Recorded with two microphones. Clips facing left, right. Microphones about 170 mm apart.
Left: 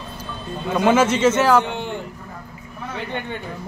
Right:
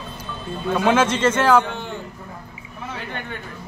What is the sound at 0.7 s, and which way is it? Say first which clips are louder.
A man's voice: left 2 dB; 10° left (ahead or behind).